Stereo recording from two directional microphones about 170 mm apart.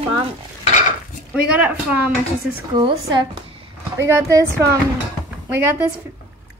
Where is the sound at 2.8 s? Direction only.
25° right (ahead or behind).